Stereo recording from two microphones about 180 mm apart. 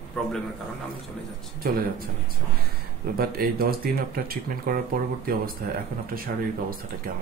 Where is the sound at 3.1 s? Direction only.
55° right (ahead or behind).